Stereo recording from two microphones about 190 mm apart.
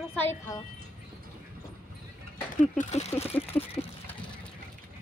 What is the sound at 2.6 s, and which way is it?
Speech, 35° left (ahead or behind).